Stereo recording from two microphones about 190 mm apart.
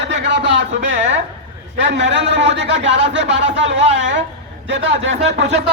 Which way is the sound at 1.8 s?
70° right (ahead or behind).